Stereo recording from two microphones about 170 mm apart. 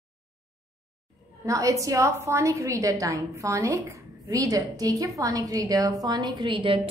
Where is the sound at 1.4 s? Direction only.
20° right (ahead or behind).